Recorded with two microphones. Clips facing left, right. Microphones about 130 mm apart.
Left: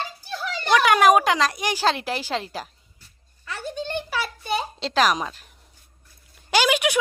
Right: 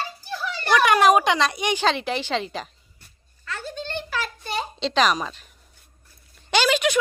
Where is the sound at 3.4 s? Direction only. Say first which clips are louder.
Left 2 dB; 15° left (ahead or behind).